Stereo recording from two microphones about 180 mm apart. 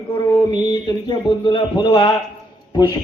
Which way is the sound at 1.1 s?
25° left (ahead or behind).